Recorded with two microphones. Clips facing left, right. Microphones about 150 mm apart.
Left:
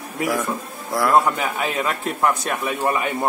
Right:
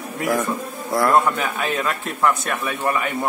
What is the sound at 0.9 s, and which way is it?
Speech, centre (ahead or behind).